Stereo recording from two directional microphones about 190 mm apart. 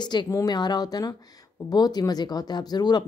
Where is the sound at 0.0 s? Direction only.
25° left (ahead or behind).